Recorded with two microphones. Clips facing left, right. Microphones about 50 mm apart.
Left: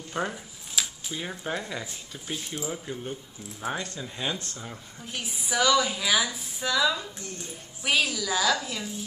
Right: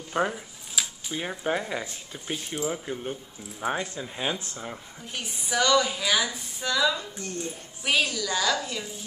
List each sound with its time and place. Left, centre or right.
0.1 s speech: centre
0.8 s cutlery: centre
1.4 s speech: centre
2.7 s speech: centre
5.0 s a woman's voice: centre